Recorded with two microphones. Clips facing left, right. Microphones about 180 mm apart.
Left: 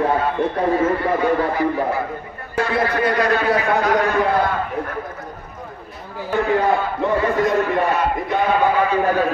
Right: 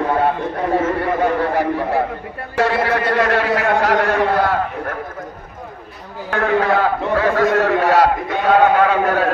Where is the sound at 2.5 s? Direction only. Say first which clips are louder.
Right 2 dB; 75° right (ahead or behind).